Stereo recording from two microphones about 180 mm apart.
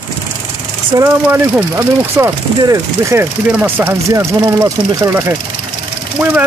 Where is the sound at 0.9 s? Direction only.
15° right (ahead or behind).